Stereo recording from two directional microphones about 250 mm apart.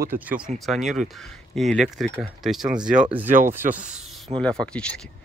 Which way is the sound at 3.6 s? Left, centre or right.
Right.